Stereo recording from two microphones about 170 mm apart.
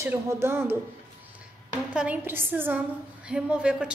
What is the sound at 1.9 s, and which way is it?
A woman's voice, 5° right (ahead or behind).